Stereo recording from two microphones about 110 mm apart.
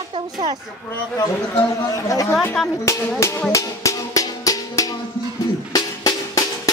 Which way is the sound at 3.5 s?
30° left (ahead or behind).